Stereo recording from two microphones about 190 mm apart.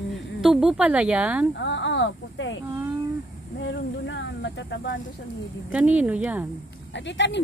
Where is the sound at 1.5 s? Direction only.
70° left (ahead or behind).